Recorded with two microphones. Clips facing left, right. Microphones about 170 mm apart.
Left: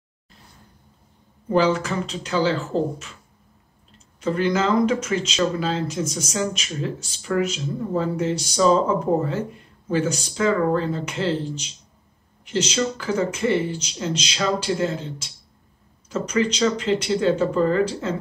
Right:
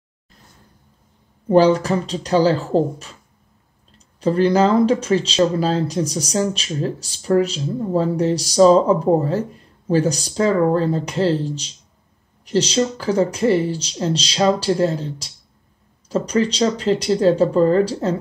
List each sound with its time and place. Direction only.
1.5 s speech: 35° right (ahead or behind)
4.2 s speech: 35° right (ahead or behind)